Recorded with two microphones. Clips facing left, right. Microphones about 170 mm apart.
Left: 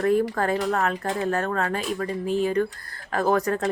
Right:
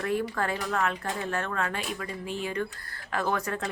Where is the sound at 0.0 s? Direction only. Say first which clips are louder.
Left 7 dB; 40° left (ahead or behind).